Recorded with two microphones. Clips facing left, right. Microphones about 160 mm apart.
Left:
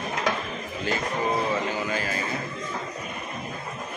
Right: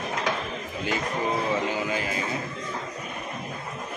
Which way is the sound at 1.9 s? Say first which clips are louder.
Even; 15° right (ahead or behind).